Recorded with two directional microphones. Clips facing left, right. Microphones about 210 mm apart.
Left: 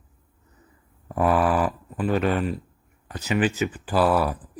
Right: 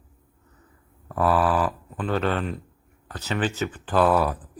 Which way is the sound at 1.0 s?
15° left (ahead or behind).